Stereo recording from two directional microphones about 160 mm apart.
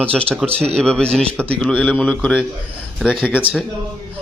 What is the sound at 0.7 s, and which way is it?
A man's voice, 5° left (ahead or behind).